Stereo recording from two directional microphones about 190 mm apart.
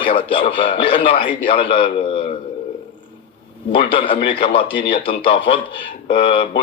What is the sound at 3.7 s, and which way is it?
Speech, 25° left (ahead or behind).